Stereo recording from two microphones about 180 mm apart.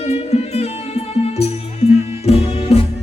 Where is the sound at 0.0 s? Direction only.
35° left (ahead or behind).